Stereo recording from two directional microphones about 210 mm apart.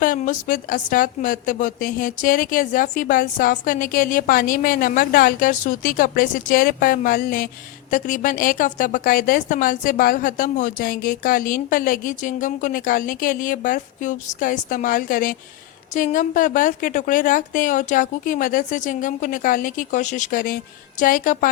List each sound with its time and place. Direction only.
0.0 s a woman's voice: 40° left (ahead or behind)